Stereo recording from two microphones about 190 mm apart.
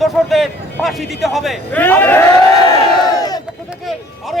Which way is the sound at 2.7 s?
20° left (ahead or behind).